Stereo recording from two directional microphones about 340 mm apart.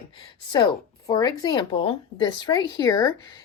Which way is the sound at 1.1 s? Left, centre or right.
Centre.